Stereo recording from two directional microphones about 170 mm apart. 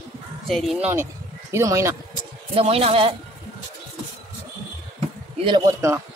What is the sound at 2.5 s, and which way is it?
Speech, 35° right (ahead or behind).